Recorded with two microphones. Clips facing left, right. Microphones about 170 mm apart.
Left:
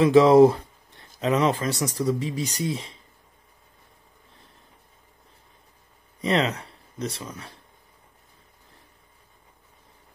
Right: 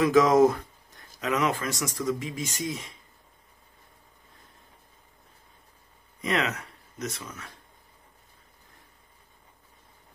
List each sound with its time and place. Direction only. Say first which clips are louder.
0.0 s speech: left 5 dB; 30° left (ahead or behind)
6.2 s speech: left 4 dB; 30° left (ahead or behind)